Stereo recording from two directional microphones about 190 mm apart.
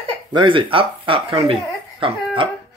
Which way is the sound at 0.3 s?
25° right (ahead or behind).